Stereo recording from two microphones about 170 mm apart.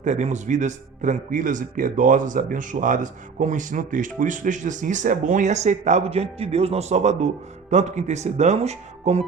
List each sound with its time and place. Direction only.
0.0 s a man's voice: 45° right (ahead or behind)